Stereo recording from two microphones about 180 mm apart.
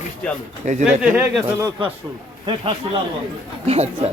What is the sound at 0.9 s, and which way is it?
Speech, 10° right (ahead or behind).